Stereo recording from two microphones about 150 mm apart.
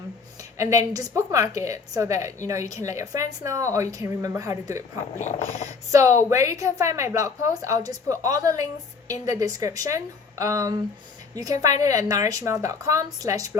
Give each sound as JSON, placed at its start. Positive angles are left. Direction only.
{"t": 0.6, "sound": "a woman's voice", "side_deg": -20}
{"t": 5.1, "sound": "speech", "side_deg": 50}
{"t": 5.9, "sound": "a woman's voice", "side_deg": -20}